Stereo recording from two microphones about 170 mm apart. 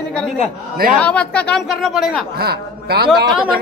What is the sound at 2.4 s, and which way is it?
Speech, 65° right (ahead or behind).